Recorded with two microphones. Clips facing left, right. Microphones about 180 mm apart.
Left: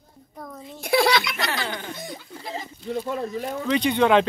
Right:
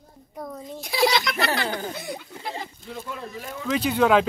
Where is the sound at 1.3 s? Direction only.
65° right (ahead or behind).